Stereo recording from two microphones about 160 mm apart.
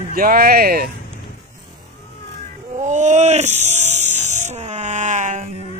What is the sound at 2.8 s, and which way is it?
Speech, 50° right (ahead or behind).